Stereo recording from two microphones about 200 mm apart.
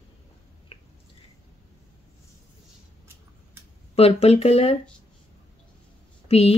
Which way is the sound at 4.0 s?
30° left (ahead or behind).